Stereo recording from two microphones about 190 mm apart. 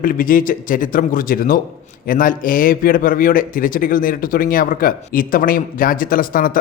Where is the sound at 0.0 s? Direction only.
50° left (ahead or behind).